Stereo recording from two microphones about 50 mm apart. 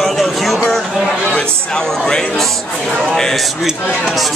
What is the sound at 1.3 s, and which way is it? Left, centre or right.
A man's voice, centre.